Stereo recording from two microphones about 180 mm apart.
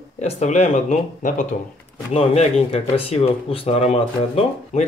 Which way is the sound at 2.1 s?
35° left (ahead or behind).